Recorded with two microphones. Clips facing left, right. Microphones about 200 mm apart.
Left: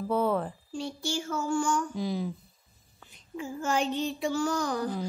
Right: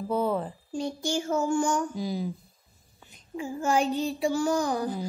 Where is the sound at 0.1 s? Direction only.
Centre (ahead or behind).